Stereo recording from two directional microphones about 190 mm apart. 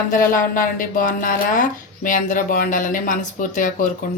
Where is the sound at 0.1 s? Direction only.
45° left (ahead or behind).